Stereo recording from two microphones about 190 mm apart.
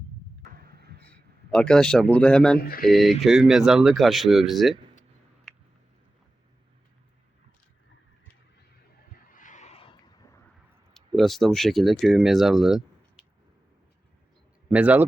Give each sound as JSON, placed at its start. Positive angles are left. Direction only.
{"t": 0.5, "sound": "vehicle", "side_deg": -55}
{"t": 1.0, "sound": "a man's voice", "side_deg": 5}
{"t": 2.6, "sound": "speech", "side_deg": 50}
{"t": 2.9, "sound": "speech", "side_deg": 0}
{"t": 5.5, "sound": "a sound", "side_deg": 5}
{"t": 9.2, "sound": "a sound", "side_deg": 45}
{"t": 10.9, "sound": "speech", "side_deg": 0}
{"t": 14.7, "sound": "speech", "side_deg": -5}